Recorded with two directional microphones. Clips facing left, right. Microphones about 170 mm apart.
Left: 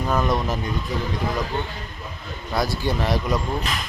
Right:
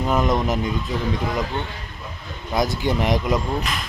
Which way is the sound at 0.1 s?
20° right (ahead or behind).